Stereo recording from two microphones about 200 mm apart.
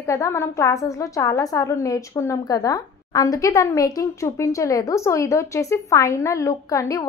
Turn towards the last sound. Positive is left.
turn(degrees=15)  # may be behind; listen again after turning